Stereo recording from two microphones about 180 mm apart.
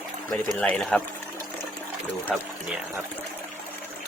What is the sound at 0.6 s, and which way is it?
Speech, 5° left (ahead or behind).